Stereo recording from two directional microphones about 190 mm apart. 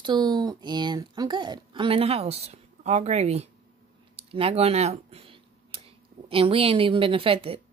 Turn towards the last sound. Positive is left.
turn(degrees=-30)  # may be behind; listen again after turning